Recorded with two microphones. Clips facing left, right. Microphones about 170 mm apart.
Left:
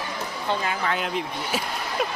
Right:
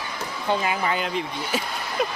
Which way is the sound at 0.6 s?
Centre (ahead or behind).